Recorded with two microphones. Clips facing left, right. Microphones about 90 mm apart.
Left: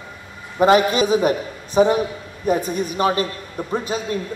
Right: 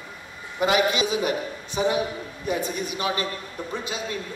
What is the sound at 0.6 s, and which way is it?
A man's voice, 40° left (ahead or behind).